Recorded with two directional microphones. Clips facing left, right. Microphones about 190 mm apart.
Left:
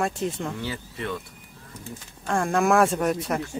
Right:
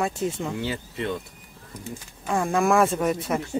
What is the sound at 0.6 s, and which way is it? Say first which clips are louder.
Speech: right 3 dB; 25° right (ahead or behind).